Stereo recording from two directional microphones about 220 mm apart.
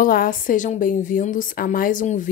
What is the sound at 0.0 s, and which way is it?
A woman's voice, 40° left (ahead or behind).